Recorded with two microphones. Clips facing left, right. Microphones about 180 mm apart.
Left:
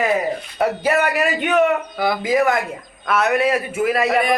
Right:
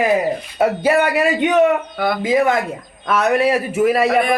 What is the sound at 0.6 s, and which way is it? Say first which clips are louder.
Speech: right 3 dB; 25° right (ahead or behind).